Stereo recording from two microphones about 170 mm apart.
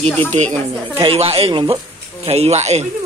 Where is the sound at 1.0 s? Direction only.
35° right (ahead or behind).